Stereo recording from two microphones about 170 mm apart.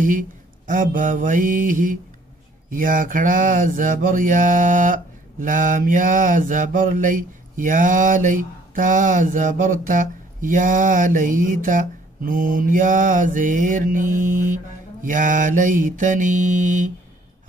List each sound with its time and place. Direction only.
0.0 s mantra: 50° right (ahead or behind)